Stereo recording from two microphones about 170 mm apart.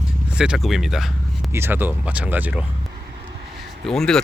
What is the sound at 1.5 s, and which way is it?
Speech, 15° right (ahead or behind).